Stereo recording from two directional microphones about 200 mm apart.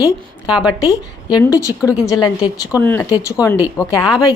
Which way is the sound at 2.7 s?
10° left (ahead or behind).